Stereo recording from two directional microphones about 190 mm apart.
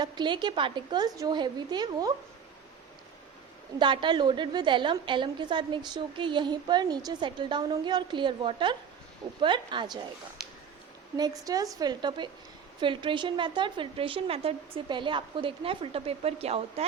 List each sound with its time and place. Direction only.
0.0 s a woman's voice: 25° right (ahead or behind)
3.8 s a woman's voice: 25° right (ahead or behind)
10.4 s a sound: 5° right (ahead or behind)
11.2 s a woman's voice: 20° right (ahead or behind)